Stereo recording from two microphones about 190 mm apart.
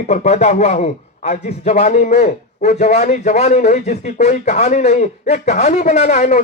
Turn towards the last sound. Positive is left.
turn(degrees=40)  # may be behind; listen again after turning